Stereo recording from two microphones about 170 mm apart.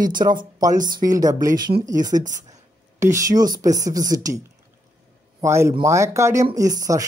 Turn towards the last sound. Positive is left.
turn(degrees=-20)  # may be behind; listen again after turning